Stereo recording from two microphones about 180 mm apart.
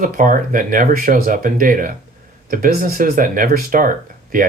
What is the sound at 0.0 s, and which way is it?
Speech, 50° right (ahead or behind).